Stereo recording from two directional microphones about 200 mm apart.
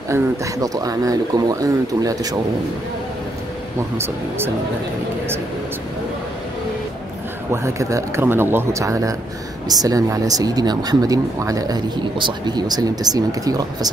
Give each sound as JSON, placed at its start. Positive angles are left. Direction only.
{"t": 0.1, "sound": "speech", "side_deg": -20}
{"t": 7.5, "sound": "speech", "side_deg": -15}